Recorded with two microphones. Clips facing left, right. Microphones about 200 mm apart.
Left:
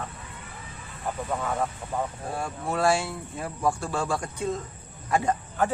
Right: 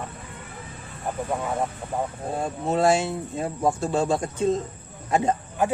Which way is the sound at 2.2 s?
20° right (ahead or behind).